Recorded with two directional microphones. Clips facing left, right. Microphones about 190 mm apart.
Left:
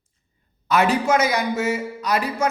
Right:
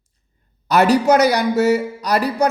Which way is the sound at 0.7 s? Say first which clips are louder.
Right 5 dB; 40° right (ahead or behind).